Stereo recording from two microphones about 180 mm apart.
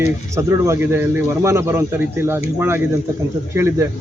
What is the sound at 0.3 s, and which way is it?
A man's voice, 15° right (ahead or behind).